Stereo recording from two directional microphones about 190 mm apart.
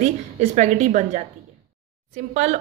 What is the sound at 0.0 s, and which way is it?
A woman's voice, 40° right (ahead or behind).